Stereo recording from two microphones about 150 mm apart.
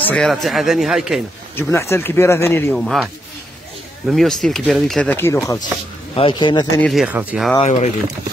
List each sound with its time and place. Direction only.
0.0 s speech: 5° left (ahead or behind)
1.6 s speech: 20° left (ahead or behind)
2.7 s speech: centre (ahead or behind)
4.1 s speech: centre (ahead or behind)
5.1 s speech: 15° left (ahead or behind)
6.1 s speech: 35° left (ahead or behind)
6.8 s speech: centre (ahead or behind)
7.1 s speech: 10° right (ahead or behind)
7.6 s speech: 45° left (ahead or behind)